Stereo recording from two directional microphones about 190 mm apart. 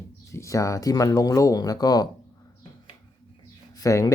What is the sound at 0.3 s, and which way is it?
Speech, 15° left (ahead or behind).